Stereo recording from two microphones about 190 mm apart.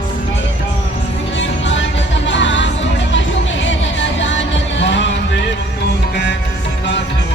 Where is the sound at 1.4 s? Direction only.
75° left (ahead or behind).